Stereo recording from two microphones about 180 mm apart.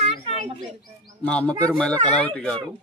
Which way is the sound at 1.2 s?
5° left (ahead or behind).